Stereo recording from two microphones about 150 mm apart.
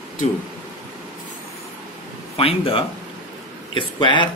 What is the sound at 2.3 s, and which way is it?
Speech, 40° left (ahead or behind).